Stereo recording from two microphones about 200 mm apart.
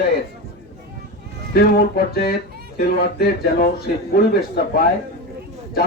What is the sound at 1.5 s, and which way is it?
Speech, 50° left (ahead or behind).